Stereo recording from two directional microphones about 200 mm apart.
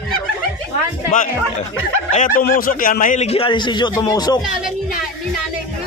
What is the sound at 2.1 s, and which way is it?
Speech, 40° left (ahead or behind).